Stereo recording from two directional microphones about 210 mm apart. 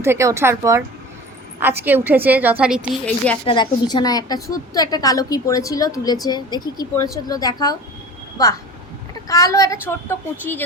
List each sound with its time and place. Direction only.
0.0 s a woman's voice: 15° right (ahead or behind)
3.4 s a woman's voice: 20° left (ahead or behind)
9.1 s a woman's voice: 15° left (ahead or behind)